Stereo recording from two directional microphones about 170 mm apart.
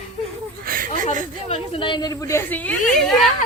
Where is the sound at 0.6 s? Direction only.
55° right (ahead or behind).